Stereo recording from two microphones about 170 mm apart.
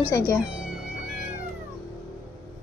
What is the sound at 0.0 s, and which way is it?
Speech, 20° left (ahead or behind).